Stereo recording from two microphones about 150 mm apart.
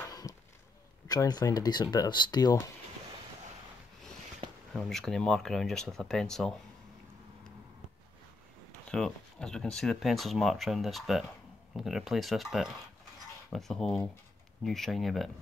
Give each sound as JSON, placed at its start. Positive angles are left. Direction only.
{"t": 0.0, "sound": "chop", "side_deg": 25}
{"t": 1.0, "sound": "speech", "side_deg": 25}
{"t": 4.7, "sound": "speech", "side_deg": 5}
{"t": 8.8, "sound": "speech", "side_deg": 5}